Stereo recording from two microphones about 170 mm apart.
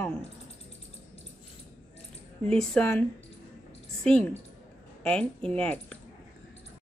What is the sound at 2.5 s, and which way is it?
Speech, 5° left (ahead or behind).